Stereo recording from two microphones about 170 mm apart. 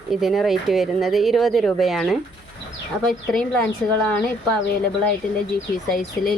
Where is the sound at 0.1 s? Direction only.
Centre (ahead or behind).